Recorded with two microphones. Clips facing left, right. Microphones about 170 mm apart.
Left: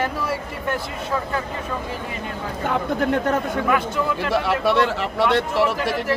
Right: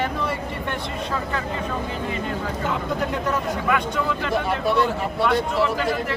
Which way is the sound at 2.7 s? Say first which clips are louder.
Left 6 dB; 55° left (ahead or behind).